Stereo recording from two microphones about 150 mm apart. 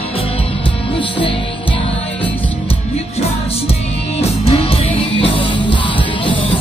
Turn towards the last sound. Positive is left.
turn(degrees=35)  # may be behind; listen again after turning